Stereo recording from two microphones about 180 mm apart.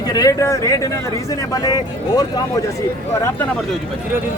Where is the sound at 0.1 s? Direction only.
20° left (ahead or behind).